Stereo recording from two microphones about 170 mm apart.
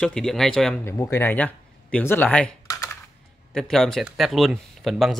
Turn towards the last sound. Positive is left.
turn(degrees=0)  # may be behind; listen again after turning